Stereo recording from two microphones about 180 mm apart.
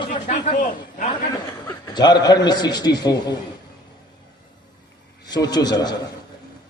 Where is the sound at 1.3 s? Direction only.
20° left (ahead or behind).